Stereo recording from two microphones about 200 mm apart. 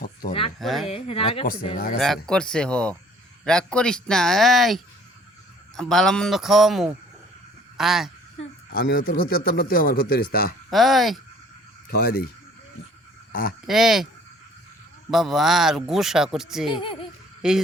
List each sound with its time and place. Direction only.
0.0 s a sound: 45° left (ahead or behind)
0.6 s speech: centre (ahead or behind)
0.9 s speech: 30° left (ahead or behind)
2.0 s speech: centre (ahead or behind)
8.7 s a man's voice: 50° left (ahead or behind)
10.7 s speech: centre (ahead or behind)
11.9 s a man's voice: 50° left (ahead or behind)
13.7 s speech: centre (ahead or behind)
15.1 s speech: centre (ahead or behind)
16.8 s speech: 25° left (ahead or behind)
17.4 s speech: 5° right (ahead or behind)